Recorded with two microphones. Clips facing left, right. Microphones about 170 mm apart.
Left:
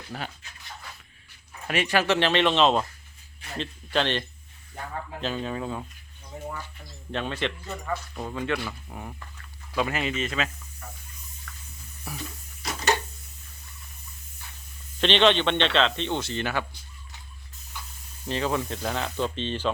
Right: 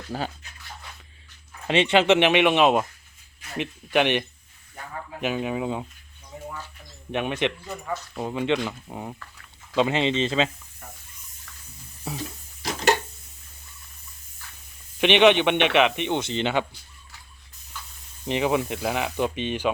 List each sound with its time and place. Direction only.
0.1 s speech: 35° right (ahead or behind)
1.6 s speech: 25° right (ahead or behind)
5.2 s speech: 15° right (ahead or behind)
7.1 s speech: 15° right (ahead or behind)
12.1 s speech: 25° right (ahead or behind)
15.0 s speech: 15° right (ahead or behind)
17.7 s spray: 15° left (ahead or behind)
18.3 s speech: 15° right (ahead or behind)